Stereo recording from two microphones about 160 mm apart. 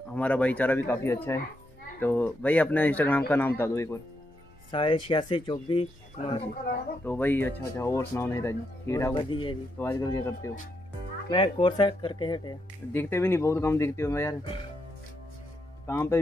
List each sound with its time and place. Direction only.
0.1 s a man's voice: 10° left (ahead or behind)
4.6 s speech: 30° left (ahead or behind)
7.1 s a man's voice: 10° left (ahead or behind)
9.1 s speech: 30° left (ahead or behind)
9.8 s a man's voice: 15° left (ahead or behind)
11.2 s speech: 35° left (ahead or behind)
12.9 s a man's voice: 15° left (ahead or behind)
15.9 s a man's voice: 15° left (ahead or behind)